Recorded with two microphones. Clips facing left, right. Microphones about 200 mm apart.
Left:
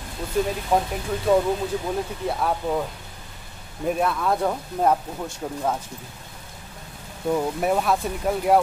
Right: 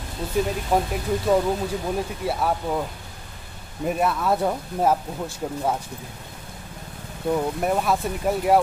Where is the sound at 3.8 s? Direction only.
5° right (ahead or behind).